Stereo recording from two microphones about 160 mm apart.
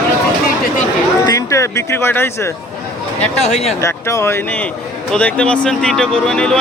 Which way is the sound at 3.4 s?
45° left (ahead or behind).